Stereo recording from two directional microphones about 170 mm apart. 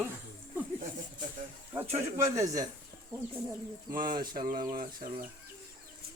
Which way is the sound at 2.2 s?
20° right (ahead or behind).